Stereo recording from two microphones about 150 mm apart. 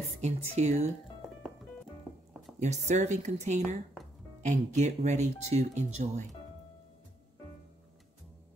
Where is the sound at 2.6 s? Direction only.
50° right (ahead or behind).